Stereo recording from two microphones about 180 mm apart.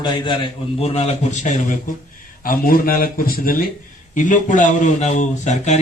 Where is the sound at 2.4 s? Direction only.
50° left (ahead or behind).